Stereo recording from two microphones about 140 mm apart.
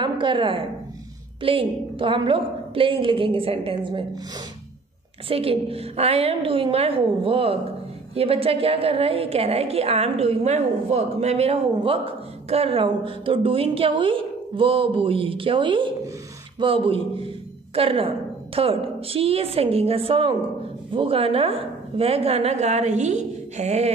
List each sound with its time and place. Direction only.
0.0 s a woman's voice: 35° right (ahead or behind)
5.3 s a woman's voice: 45° right (ahead or behind)